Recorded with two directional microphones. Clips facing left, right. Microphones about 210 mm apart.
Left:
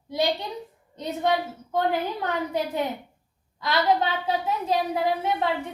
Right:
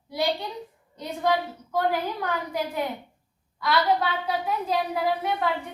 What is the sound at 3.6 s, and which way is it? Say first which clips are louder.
Speech: left 1 dB; 25° left (ahead or behind).